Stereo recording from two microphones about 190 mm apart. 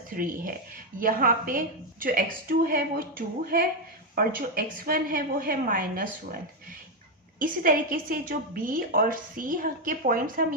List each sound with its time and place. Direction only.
0.1 s a woman's voice: 45° right (ahead or behind)